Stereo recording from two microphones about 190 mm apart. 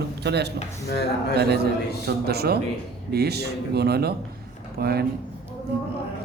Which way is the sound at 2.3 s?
55° right (ahead or behind).